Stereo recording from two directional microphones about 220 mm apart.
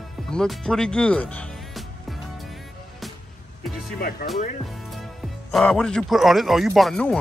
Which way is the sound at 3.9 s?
45° left (ahead or behind).